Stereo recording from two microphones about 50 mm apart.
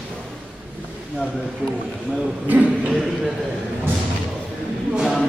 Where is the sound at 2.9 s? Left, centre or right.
Centre.